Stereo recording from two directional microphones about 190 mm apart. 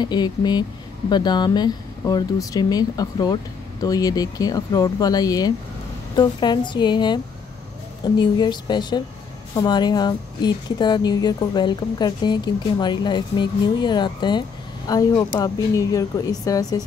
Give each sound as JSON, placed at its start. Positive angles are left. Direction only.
{"t": 0.0, "sound": "speech", "side_deg": 20}